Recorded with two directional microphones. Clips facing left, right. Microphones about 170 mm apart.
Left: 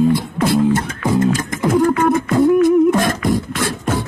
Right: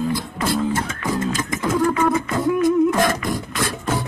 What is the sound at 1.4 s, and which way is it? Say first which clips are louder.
Beatboxing: left 5 dB; 50° left (ahead or behind).